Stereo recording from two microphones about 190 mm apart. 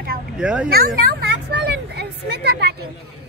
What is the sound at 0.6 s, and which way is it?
Speech, 55° right (ahead or behind).